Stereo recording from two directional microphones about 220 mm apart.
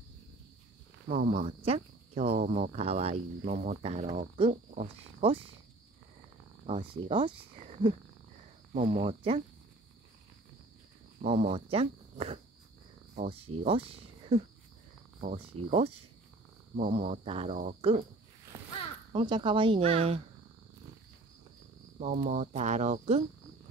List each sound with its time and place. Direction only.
1.0 s speech: 40° right (ahead or behind)
6.6 s speech: 25° right (ahead or behind)
11.1 s speech: 30° right (ahead or behind)
15.1 s speech: 35° right (ahead or behind)
16.7 s speech: 35° right (ahead or behind)
19.1 s speech: 20° right (ahead or behind)
21.9 s speech: 35° right (ahead or behind)